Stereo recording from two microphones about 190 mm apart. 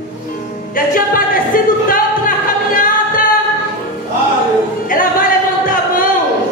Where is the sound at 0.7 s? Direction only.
50° left (ahead or behind).